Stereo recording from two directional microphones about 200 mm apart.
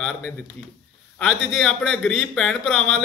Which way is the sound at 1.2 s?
Centre (ahead or behind).